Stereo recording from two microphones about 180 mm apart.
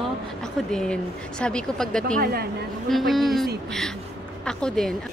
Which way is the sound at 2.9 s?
Centre (ahead or behind).